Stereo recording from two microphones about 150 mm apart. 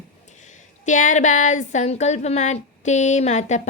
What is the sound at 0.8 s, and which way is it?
Speech, 55° left (ahead or behind).